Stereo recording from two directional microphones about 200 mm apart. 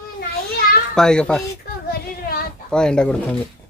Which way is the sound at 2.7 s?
5° left (ahead or behind).